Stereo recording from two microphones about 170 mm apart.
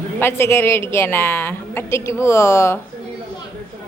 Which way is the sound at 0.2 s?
15° left (ahead or behind).